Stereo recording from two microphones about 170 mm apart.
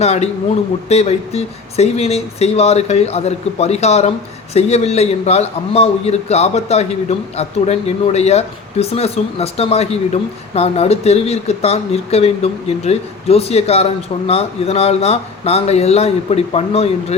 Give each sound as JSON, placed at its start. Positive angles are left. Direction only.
{"t": 0.0, "sound": "a man's voice", "side_deg": 40}